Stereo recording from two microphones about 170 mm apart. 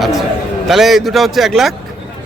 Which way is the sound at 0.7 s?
Centre (ahead or behind).